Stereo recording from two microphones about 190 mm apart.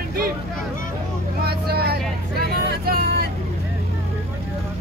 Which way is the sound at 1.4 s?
55° right (ahead or behind).